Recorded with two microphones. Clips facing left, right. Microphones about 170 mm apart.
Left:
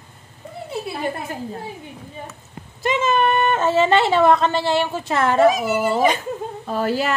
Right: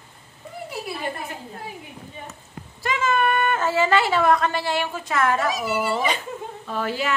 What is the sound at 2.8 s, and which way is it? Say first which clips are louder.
Speech: left 3 dB; 25° left (ahead or behind).